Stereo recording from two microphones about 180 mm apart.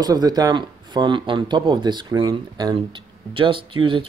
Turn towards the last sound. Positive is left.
turn(degrees=-30)  # may be behind; listen again after turning